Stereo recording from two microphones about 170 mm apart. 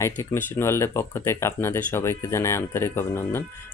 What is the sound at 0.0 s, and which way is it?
Speech, 15° left (ahead or behind).